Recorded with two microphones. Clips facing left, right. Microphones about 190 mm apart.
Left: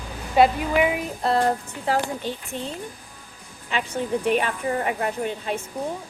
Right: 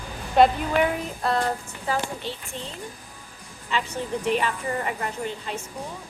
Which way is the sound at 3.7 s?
55° left (ahead or behind).